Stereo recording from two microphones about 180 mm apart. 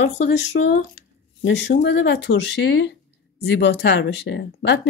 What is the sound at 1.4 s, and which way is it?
Speech, 75° left (ahead or behind).